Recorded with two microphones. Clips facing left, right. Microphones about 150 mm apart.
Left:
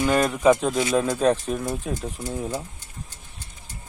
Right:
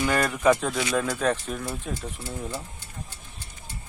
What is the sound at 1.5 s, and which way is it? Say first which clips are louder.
Speech: left 5 dB; 20° left (ahead or behind).